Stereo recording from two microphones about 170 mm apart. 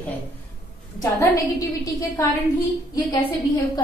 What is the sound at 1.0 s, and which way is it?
Speech, 20° left (ahead or behind).